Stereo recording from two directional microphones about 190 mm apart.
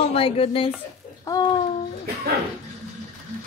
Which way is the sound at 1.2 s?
20° left (ahead or behind).